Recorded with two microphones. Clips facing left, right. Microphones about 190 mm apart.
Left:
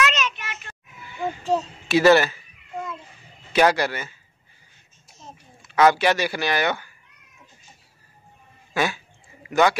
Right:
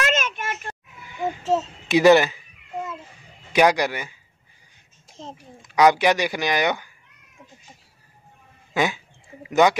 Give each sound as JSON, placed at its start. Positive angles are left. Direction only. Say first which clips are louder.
{"t": 0.0, "sound": "a sound", "louder": "right 1 dB", "side_deg": -50}
{"t": 1.4, "sound": "speech", "louder": "right 1 dB", "side_deg": 0}
{"t": 1.9, "sound": "speech", "louder": "right 1 dB", "side_deg": -15}
{"t": 3.5, "sound": "speech", "louder": "right 1 dB", "side_deg": -15}
{"t": 5.6, "sound": "speech", "louder": "right 1 dB", "side_deg": -15}
{"t": 8.7, "sound": "speech", "louder": "right 1 dB", "side_deg": -15}